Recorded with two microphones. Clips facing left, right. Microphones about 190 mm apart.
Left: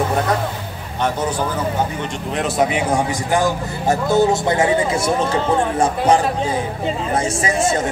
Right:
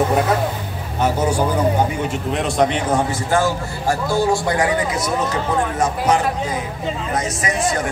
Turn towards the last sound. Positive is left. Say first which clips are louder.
# left 2 dB
turn(degrees=25)  # may be behind; listen again after turning